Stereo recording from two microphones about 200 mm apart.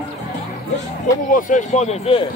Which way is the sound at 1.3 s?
40° left (ahead or behind).